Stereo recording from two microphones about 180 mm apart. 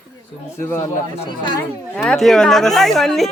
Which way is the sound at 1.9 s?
5° left (ahead or behind).